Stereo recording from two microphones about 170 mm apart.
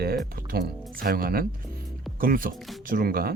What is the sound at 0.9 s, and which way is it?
Speech, 60° right (ahead or behind).